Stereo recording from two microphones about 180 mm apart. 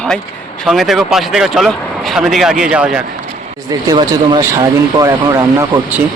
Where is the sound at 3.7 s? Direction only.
25° right (ahead or behind).